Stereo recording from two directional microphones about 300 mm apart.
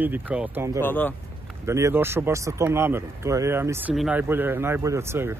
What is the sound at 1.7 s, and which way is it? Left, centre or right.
Speech, centre.